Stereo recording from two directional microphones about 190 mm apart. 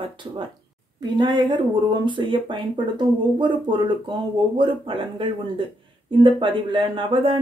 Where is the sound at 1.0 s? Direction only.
25° right (ahead or behind).